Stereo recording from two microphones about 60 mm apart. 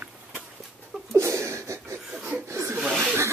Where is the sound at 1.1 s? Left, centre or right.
Right.